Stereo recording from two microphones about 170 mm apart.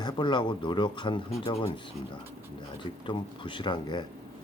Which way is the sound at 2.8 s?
30° left (ahead or behind).